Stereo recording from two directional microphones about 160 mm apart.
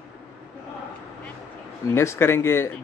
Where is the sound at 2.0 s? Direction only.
15° left (ahead or behind).